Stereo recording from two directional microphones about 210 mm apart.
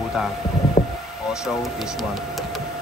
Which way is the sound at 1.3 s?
Centre (ahead or behind).